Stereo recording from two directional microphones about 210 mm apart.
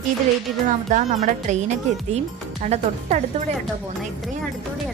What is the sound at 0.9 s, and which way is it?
Speech, 35° right (ahead or behind).